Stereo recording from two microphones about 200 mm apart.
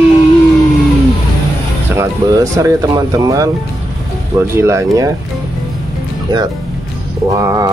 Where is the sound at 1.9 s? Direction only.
15° right (ahead or behind).